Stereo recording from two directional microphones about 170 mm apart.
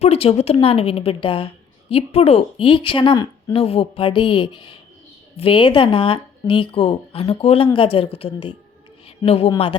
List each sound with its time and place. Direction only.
0.0 s speech: 35° left (ahead or behind)